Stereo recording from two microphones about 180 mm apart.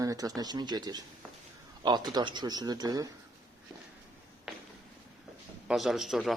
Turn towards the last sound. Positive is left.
turn(degrees=0)  # may be behind; listen again after turning